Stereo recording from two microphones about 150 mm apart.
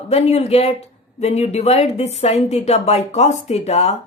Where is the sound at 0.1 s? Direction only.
45° left (ahead or behind).